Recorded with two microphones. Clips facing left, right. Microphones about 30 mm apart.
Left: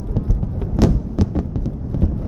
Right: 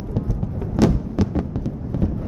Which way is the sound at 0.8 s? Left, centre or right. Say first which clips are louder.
Even; centre.